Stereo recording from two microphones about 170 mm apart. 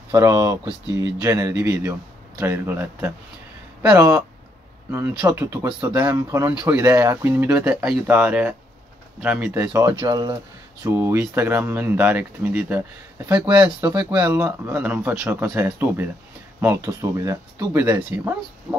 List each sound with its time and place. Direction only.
0.1 s speech: 20° right (ahead or behind)
4.9 s speech: 15° right (ahead or behind)